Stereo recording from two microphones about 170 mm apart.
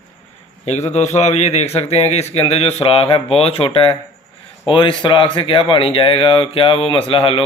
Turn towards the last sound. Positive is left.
turn(degrees=30)  # may be behind; listen again after turning